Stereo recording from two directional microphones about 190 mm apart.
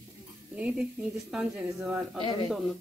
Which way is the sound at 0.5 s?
5° right (ahead or behind).